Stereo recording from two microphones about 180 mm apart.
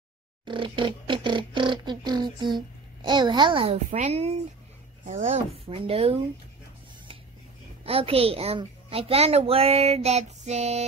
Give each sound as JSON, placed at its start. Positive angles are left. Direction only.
{"t": 0.5, "sound": "speech", "side_deg": -25}
{"t": 5.8, "sound": "a child's voice", "side_deg": -35}
{"t": 7.8, "sound": "a child's voice", "side_deg": -30}